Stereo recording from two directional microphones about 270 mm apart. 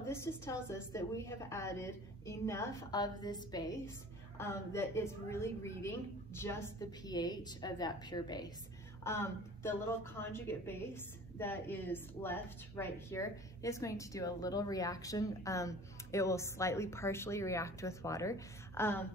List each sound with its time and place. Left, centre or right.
0.0 s a woman's voice: centre